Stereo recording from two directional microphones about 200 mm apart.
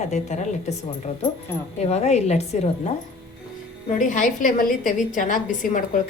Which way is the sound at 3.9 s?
40° left (ahead or behind).